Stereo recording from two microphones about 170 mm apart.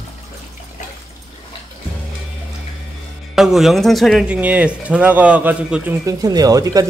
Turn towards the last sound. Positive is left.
turn(degrees=-20)  # may be behind; listen again after turning